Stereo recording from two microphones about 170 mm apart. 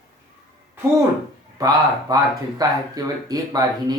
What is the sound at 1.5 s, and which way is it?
Speech, 20° right (ahead or behind).